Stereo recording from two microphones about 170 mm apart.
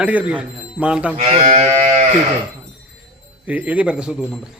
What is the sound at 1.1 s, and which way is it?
Livestock, 35° right (ahead or behind).